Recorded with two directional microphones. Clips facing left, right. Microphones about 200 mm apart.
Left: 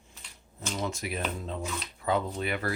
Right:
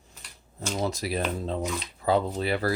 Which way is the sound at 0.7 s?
35° right (ahead or behind).